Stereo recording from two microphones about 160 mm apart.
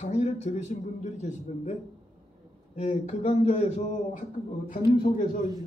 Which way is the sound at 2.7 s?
45° left (ahead or behind).